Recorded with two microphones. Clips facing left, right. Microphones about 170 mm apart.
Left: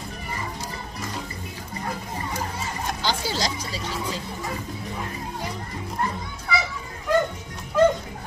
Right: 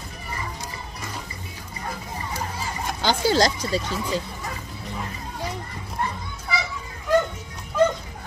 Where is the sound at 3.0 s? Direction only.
55° right (ahead or behind).